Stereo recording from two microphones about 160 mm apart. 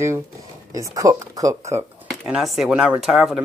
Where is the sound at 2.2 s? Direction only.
5° right (ahead or behind).